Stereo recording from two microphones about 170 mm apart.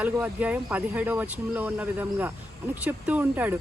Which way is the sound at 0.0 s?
10° right (ahead or behind).